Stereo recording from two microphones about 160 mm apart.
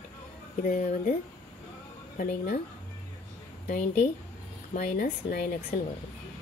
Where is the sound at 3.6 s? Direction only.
50° left (ahead or behind).